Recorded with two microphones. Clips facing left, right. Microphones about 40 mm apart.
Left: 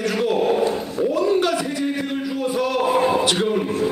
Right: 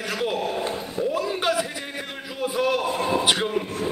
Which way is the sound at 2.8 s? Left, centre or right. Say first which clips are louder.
Left 7 dB; left.